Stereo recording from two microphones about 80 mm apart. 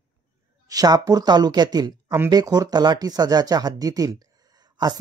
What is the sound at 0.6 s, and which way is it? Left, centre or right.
Speech, right.